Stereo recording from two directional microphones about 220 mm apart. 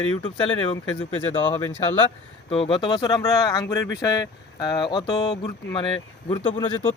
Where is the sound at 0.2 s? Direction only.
20° left (ahead or behind).